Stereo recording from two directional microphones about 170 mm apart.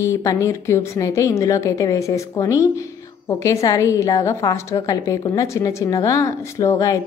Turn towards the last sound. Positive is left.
turn(degrees=20)  # may be behind; listen again after turning